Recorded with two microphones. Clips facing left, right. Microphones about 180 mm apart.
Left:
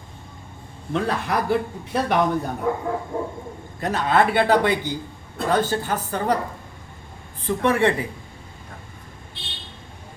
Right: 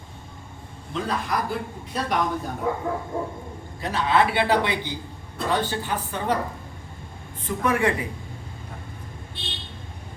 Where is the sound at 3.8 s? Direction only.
50° left (ahead or behind).